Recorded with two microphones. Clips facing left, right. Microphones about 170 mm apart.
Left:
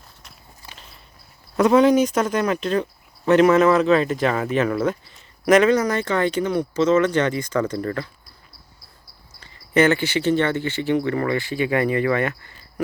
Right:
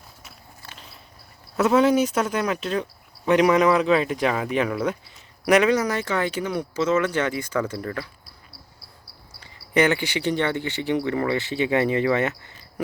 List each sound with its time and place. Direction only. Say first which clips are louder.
1.5 s speech: left 3 dB; 5° right (ahead or behind)
9.4 s speech: left 3 dB; 15° right (ahead or behind)